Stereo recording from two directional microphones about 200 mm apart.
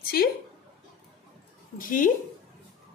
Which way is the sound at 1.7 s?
45° left (ahead or behind).